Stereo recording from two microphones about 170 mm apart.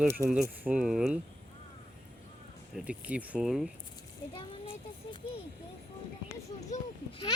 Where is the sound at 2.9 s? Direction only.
5° right (ahead or behind).